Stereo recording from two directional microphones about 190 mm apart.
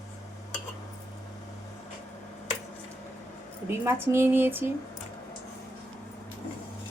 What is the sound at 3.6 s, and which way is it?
Speech, 10° right (ahead or behind).